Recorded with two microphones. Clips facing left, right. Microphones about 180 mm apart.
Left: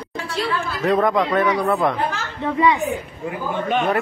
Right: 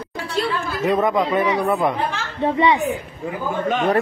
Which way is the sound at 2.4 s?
25° right (ahead or behind).